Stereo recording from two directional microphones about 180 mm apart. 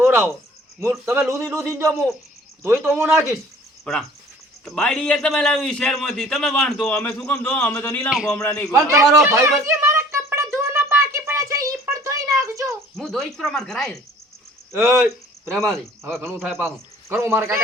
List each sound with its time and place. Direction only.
0.0 s a sound: 10° right (ahead or behind)
0.8 s a man's voice: 15° right (ahead or behind)
3.9 s a man's voice: 5° left (ahead or behind)
9.1 s a man's voice: 15° right (ahead or behind)
9.6 s a sound: 15° right (ahead or behind)
13.0 s a man's voice: centre (ahead or behind)
14.7 s a man's voice: 15° right (ahead or behind)